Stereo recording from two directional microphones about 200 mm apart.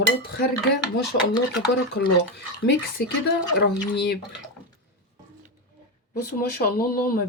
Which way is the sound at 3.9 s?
55° left (ahead or behind).